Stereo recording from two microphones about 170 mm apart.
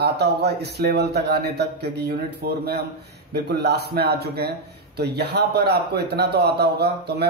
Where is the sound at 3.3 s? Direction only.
70° right (ahead or behind).